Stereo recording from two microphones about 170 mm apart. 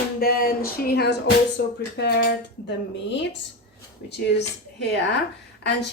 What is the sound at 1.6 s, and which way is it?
Music, 70° left (ahead or behind).